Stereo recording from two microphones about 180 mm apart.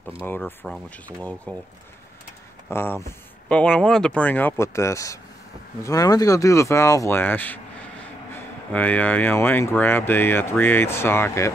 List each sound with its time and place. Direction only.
0.3 s speech: 10° left (ahead or behind)
2.7 s speech: 15° left (ahead or behind)